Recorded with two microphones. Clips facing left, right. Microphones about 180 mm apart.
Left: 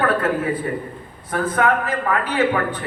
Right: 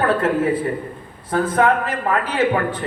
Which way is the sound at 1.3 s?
30° right (ahead or behind).